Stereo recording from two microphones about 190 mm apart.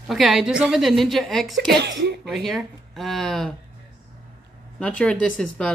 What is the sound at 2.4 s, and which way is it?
Speech, centre (ahead or behind).